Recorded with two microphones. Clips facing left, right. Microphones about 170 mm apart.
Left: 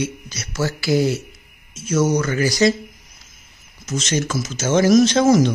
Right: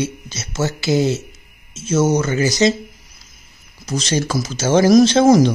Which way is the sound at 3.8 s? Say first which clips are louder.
Right 2 dB; 35° right (ahead or behind).